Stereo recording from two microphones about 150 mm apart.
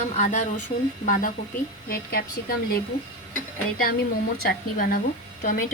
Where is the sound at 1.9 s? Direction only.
80° left.